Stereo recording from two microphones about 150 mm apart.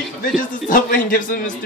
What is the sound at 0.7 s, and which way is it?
Speech, 65° left (ahead or behind).